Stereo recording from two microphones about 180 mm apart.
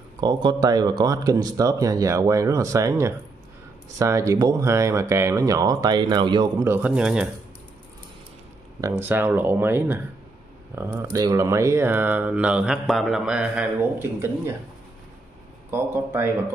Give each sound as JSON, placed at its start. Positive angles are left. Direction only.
{"t": 0.2, "sound": "speech", "side_deg": -25}
{"t": 9.0, "sound": "speech", "side_deg": -10}
{"t": 15.7, "sound": "speech", "side_deg": -15}